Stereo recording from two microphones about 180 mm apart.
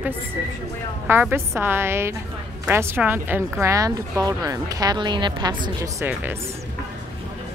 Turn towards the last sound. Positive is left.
turn(degrees=-15)  # may be behind; listen again after turning